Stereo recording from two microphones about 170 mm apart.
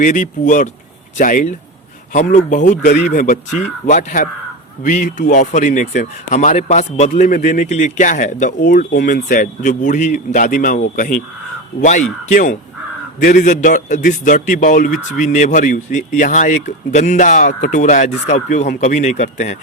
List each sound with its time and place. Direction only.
0.0 s a man's voice: 50° left (ahead or behind)
13.2 s a man's voice: 50° left (ahead or behind)